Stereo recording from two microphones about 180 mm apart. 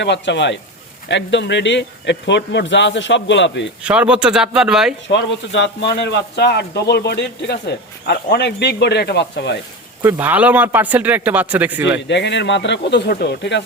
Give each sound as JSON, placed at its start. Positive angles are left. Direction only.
{"t": 0.0, "sound": "speech", "side_deg": 75}
{"t": 3.8, "sound": "speech", "side_deg": -5}
{"t": 5.0, "sound": "speech", "side_deg": 80}
{"t": 10.0, "sound": "speech", "side_deg": -10}
{"t": 12.0, "sound": "speech", "side_deg": 80}